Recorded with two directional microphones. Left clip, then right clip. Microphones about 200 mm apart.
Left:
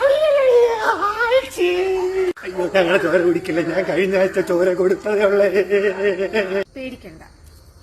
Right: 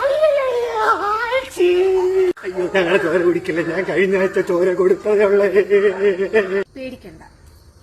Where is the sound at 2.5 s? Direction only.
Centre (ahead or behind).